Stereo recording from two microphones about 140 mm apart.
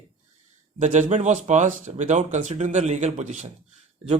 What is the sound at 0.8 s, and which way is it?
Speech, 60° right (ahead or behind).